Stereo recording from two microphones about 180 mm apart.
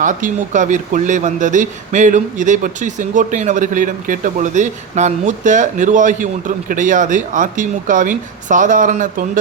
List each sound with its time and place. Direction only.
0.0 s speech: 45° right (ahead or behind)